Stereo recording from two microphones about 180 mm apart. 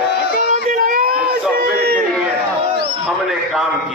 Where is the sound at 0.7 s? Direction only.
50° right (ahead or behind).